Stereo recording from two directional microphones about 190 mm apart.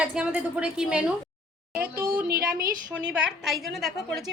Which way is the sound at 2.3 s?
55° right (ahead or behind).